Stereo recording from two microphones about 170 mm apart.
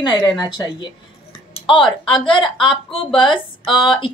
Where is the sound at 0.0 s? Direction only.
25° left (ahead or behind).